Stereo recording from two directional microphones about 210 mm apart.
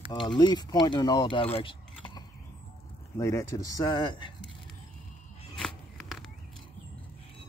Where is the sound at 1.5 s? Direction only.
25° left (ahead or behind).